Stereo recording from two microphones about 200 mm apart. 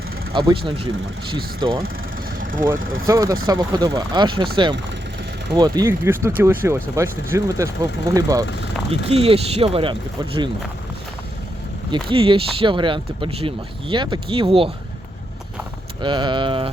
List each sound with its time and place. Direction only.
0.3 s speech: 25° right (ahead or behind)
2.4 s vehicle: 40° right (ahead or behind)
3.1 s speech: 15° right (ahead or behind)
8.9 s speech: 30° right (ahead or behind)
12.0 s speech: 25° right (ahead or behind)
16.0 s speech: 25° right (ahead or behind)